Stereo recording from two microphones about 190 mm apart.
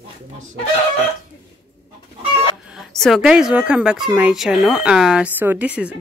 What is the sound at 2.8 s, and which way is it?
Speech, centre (ahead or behind).